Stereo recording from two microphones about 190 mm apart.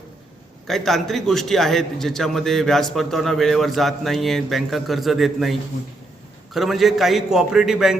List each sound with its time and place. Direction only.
0.7 s a man's voice: centre (ahead or behind)